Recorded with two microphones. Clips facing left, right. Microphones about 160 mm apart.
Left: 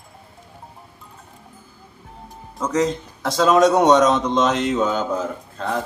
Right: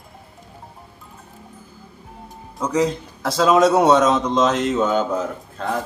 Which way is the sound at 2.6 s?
5° right (ahead or behind).